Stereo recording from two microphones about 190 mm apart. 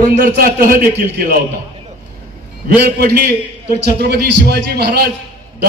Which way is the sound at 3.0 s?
55° right (ahead or behind).